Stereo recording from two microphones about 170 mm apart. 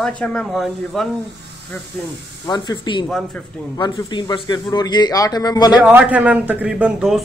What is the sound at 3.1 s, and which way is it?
Speech, centre (ahead or behind).